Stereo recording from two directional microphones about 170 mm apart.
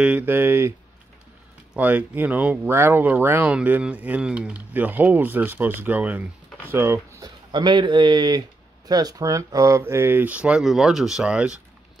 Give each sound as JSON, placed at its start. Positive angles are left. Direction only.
{"t": 0.0, "sound": "speech", "side_deg": -10}
{"t": 7.5, "sound": "speech", "side_deg": -25}